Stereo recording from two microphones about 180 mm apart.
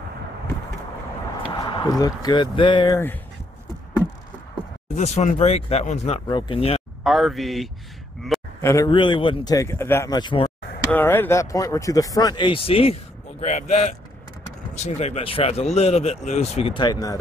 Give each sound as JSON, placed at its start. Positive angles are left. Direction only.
{"t": 1.6, "sound": "speech", "side_deg": 20}
{"t": 4.9, "sound": "speech", "side_deg": 40}
{"t": 6.2, "sound": "speech", "side_deg": 25}
{"t": 7.0, "sound": "speech", "side_deg": 0}
{"t": 8.5, "sound": "speech", "side_deg": 15}
{"t": 10.8, "sound": "speech", "side_deg": 10}